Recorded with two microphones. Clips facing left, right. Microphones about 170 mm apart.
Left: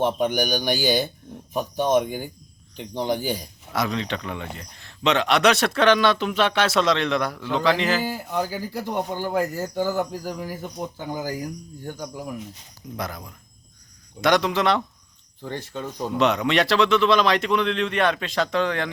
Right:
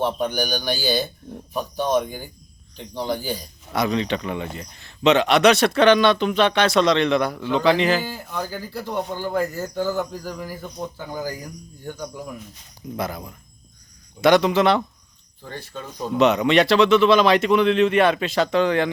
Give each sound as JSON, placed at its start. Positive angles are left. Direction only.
{"t": 0.0, "sound": "speech", "side_deg": 15}
{"t": 3.7, "sound": "speech", "side_deg": 0}
{"t": 8.0, "sound": "speech", "side_deg": 10}
{"t": 13.0, "sound": "speech", "side_deg": -5}
{"t": 15.4, "sound": "speech", "side_deg": 20}
{"t": 16.1, "sound": "speech", "side_deg": 0}